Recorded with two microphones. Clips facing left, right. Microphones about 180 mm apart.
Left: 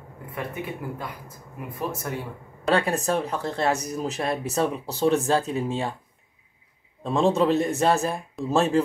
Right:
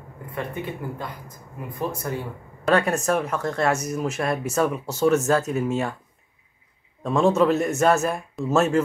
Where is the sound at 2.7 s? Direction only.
30° left (ahead or behind).